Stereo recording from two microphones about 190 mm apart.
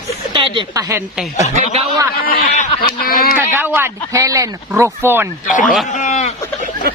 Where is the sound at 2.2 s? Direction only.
55° left (ahead or behind).